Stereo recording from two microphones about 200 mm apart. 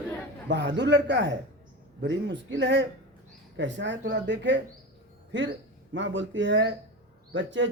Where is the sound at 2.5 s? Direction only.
65° right (ahead or behind).